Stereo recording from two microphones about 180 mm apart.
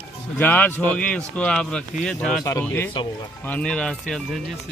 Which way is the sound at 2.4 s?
15° left (ahead or behind).